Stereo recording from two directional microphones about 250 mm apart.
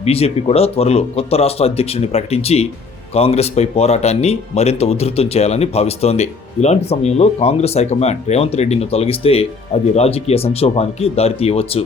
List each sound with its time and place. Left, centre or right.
0.0 s speech: left